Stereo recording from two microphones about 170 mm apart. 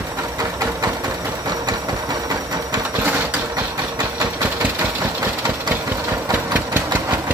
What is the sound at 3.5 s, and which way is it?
Engine, 20° right (ahead or behind).